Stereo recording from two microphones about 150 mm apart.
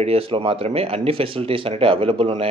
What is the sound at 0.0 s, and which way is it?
Speech, 40° right (ahead or behind).